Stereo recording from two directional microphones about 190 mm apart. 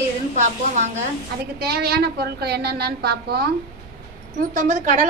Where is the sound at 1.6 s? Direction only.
55° right (ahead or behind).